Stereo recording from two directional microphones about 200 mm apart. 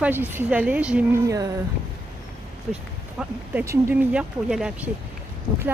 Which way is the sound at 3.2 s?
10° right (ahead or behind).